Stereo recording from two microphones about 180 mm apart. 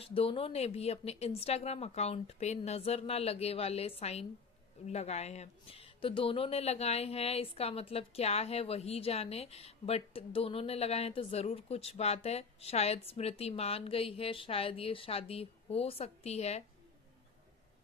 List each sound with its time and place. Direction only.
0.0 s speech: 30° left (ahead or behind)